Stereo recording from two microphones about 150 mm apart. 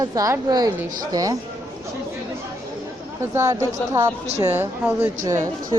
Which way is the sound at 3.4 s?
20° right (ahead or behind).